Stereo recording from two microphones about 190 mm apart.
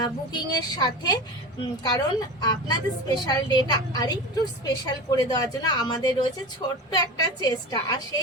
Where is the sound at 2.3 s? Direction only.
20° left (ahead or behind).